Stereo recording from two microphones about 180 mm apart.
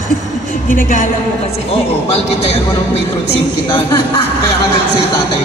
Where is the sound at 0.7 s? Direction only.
50° left (ahead or behind).